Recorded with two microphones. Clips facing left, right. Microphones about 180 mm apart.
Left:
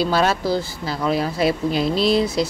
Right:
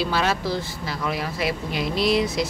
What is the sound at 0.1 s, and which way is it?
Speech, 40° left (ahead or behind).